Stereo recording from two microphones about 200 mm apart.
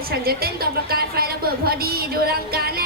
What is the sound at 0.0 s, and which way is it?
A woman's voice, 50° right (ahead or behind).